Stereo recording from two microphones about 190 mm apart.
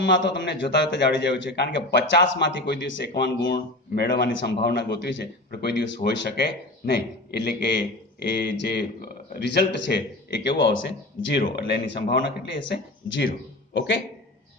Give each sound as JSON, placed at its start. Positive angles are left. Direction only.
{"t": 0.0, "sound": "a man's voice", "side_deg": 65}
{"t": 13.7, "sound": "speech", "side_deg": 75}